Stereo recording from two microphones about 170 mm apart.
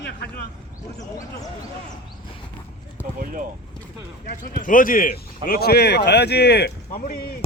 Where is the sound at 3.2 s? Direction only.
55° right (ahead or behind).